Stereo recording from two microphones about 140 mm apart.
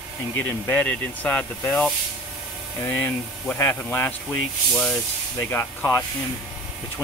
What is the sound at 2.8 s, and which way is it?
Speech, 15° left (ahead or behind).